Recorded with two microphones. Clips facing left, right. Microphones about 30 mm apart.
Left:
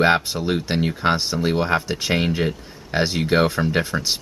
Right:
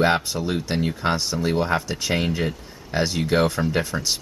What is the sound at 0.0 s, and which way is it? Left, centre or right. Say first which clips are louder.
Speech: left 2 dB; centre.